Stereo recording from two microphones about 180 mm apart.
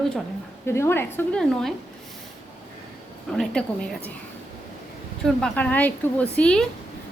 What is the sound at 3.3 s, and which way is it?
Speech, 5° left (ahead or behind).